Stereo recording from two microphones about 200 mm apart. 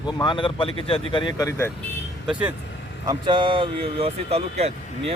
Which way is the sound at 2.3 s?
5° right (ahead or behind).